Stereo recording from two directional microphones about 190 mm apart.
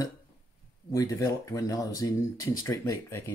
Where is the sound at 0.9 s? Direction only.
15° left (ahead or behind).